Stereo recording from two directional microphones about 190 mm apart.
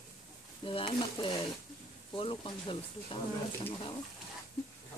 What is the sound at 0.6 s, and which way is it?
Speech, 30° left (ahead or behind).